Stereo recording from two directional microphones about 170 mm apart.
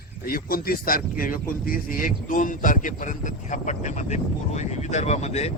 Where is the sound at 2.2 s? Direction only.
50° left (ahead or behind).